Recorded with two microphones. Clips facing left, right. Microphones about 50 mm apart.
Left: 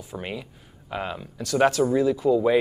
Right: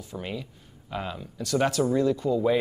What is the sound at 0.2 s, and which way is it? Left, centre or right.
Speech, left.